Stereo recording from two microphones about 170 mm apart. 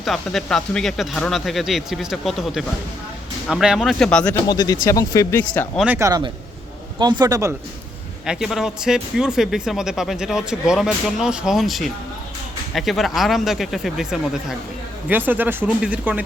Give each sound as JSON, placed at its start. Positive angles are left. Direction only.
{"t": 0.0, "sound": "speech", "side_deg": 0}
{"t": 4.4, "sound": "speech", "side_deg": 25}
{"t": 5.8, "sound": "speech", "side_deg": -15}
{"t": 8.3, "sound": "speech", "side_deg": 0}